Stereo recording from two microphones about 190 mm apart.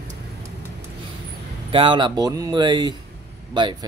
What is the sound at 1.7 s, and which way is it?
Speech, 25° right (ahead or behind).